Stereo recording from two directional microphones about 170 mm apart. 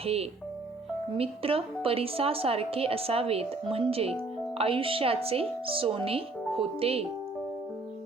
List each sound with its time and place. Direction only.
0.0 s a woman's voice: 35° right (ahead or behind)